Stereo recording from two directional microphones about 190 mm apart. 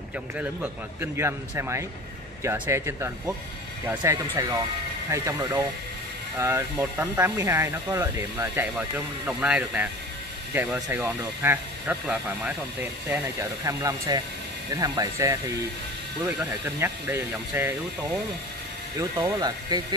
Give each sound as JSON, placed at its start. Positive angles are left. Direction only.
{"t": 0.4, "sound": "speech", "side_deg": -10}